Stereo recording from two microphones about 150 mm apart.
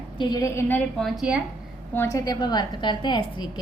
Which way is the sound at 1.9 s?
20° left (ahead or behind).